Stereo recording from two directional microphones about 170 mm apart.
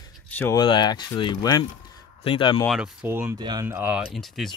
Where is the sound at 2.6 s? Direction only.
Centre (ahead or behind); by 3.6 s 25° right (ahead or behind).